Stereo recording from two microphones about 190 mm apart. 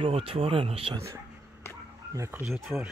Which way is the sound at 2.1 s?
15° right (ahead or behind).